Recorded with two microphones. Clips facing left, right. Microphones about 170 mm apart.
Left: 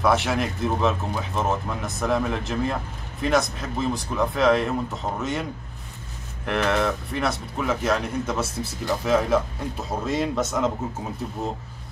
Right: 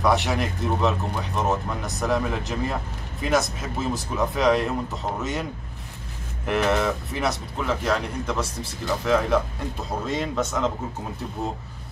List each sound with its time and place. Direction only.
0.0 s speech: centre (ahead or behind)